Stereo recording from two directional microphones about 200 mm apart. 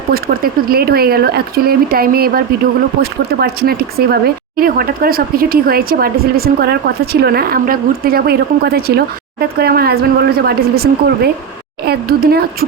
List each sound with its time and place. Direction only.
0.1 s speech: 50° right (ahead or behind)